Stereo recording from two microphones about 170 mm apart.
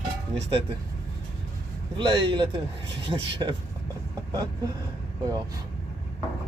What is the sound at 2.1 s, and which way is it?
Speech, 30° right (ahead or behind).